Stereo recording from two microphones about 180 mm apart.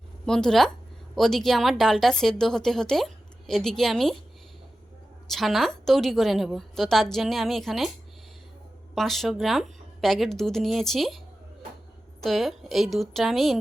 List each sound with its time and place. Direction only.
0.3 s a woman's voice: 5° left (ahead or behind)
5.3 s a woman's voice: centre (ahead or behind)
9.0 s a woman's voice: centre (ahead or behind)
12.2 s a woman's voice: centre (ahead or behind)